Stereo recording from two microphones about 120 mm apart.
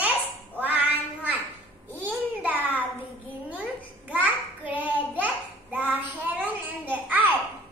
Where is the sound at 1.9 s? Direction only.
15° right (ahead or behind).